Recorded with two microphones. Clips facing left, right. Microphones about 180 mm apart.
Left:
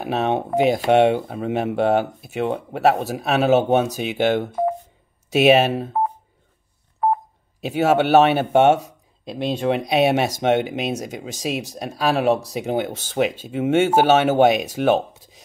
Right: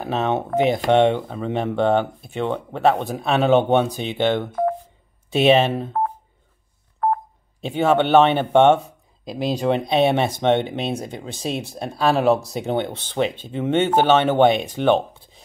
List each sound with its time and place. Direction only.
0.0 s speech: 15° left (ahead or behind)
7.0 s telephone dialing: 10° left (ahead or behind)
7.6 s speech: 5° left (ahead or behind)
10.8 s speech: 30° right (ahead or behind)
11.1 s speech: 5° left (ahead or behind)